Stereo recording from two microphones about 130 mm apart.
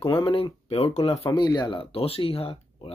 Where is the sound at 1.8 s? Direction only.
45° left (ahead or behind).